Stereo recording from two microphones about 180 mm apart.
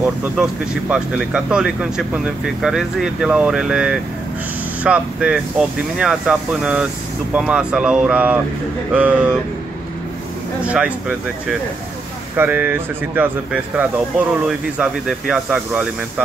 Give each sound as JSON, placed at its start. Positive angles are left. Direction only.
{"t": 0.0, "sound": "speech", "side_deg": -5}
{"t": 10.6, "sound": "speech", "side_deg": -5}